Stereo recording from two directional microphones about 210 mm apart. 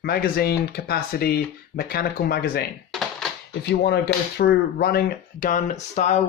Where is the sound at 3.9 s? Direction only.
50° left (ahead or behind).